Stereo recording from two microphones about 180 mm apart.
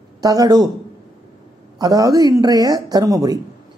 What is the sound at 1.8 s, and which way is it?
Speech, 20° right (ahead or behind).